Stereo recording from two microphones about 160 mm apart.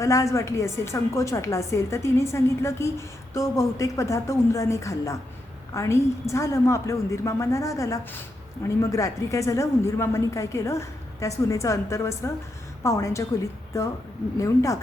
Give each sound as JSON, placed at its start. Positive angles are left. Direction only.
{"t": 0.0, "sound": "a woman's voice", "side_deg": 20}